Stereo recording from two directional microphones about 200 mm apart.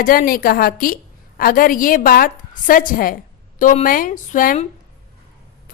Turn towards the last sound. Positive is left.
turn(degrees=40)  # may be behind; listen again after turning